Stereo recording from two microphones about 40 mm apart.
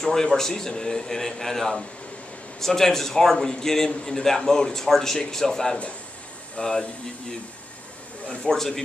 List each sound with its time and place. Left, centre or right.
0.0 s a man's voice: centre
8.5 s a man's voice: centre